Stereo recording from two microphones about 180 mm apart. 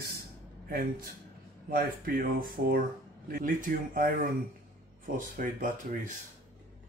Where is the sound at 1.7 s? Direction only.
55° right (ahead or behind).